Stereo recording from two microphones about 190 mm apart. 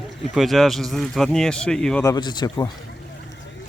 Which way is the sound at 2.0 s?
20° left (ahead or behind).